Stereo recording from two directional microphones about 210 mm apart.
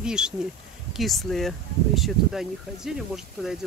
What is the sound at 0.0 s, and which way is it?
Speech, 5° right (ahead or behind).